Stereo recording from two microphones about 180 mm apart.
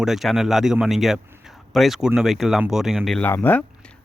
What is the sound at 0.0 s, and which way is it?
Speech, centre (ahead or behind).